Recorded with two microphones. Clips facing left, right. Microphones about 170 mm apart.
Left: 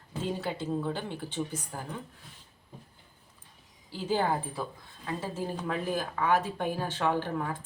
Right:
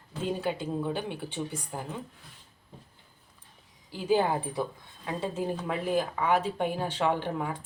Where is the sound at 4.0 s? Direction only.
15° right (ahead or behind).